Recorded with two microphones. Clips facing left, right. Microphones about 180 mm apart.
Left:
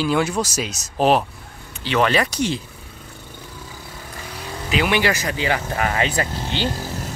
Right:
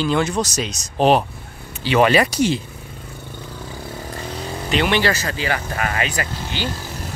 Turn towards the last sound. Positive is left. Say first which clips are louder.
# left 2 dB
turn(degrees=25)  # may be behind; listen again after turning